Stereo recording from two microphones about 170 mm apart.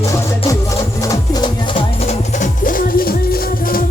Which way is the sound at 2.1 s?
50° left (ahead or behind).